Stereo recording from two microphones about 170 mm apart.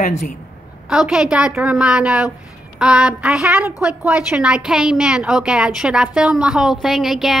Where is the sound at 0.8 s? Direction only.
5° right (ahead or behind).